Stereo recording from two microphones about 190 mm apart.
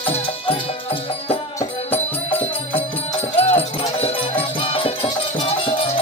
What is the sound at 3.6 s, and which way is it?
Music, 30° left (ahead or behind).